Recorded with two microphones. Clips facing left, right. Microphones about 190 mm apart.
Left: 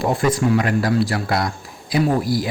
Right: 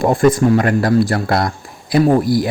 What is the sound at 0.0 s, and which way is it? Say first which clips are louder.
Speech: right 6 dB; 50° right (ahead or behind).